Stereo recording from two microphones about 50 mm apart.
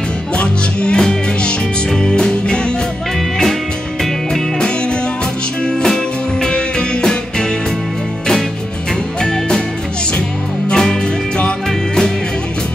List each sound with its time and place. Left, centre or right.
0.4 s music: left
4.0 s music: centre
6.4 s music: centre
10.7 s music: centre